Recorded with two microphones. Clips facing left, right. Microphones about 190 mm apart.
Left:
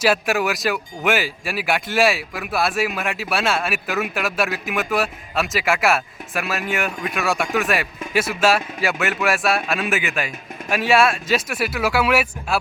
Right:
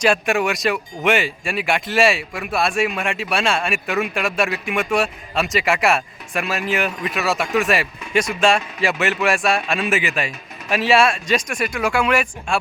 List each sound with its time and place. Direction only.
0.0 s speech: 5° left (ahead or behind)